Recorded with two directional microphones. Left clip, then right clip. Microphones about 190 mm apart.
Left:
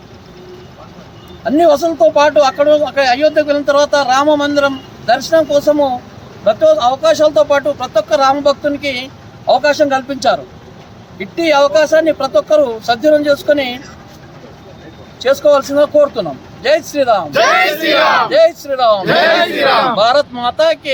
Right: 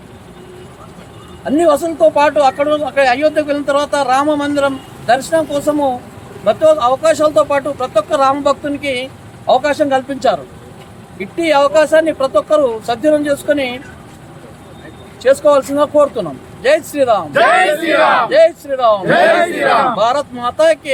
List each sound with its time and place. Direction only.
1.5 s speech: centre (ahead or behind)
15.4 s speech: centre (ahead or behind)
18.3 s speech: centre (ahead or behind)
19.0 s a sound: 55° left (ahead or behind)
20.0 s speech: 5° right (ahead or behind)